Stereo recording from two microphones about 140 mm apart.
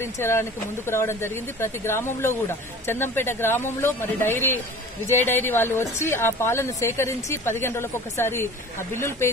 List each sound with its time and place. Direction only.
0.0 s speech: 20° left (ahead or behind)